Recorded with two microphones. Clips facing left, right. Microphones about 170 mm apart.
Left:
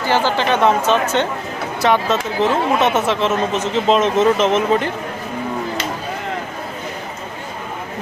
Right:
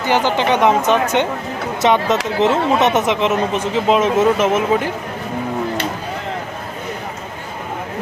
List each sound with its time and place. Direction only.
0.0 s speech: 20° right (ahead or behind)
1.8 s speech: 20° right (ahead or behind)